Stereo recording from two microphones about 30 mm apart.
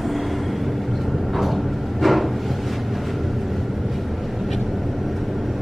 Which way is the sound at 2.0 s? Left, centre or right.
Centre.